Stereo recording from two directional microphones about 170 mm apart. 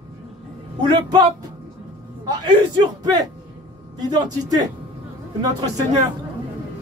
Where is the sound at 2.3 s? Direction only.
25° right (ahead or behind).